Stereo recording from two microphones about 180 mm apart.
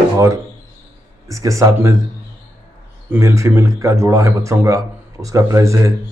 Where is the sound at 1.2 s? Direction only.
15° right (ahead or behind).